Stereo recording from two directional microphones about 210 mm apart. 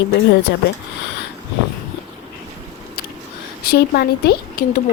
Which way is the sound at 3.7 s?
50° left (ahead or behind).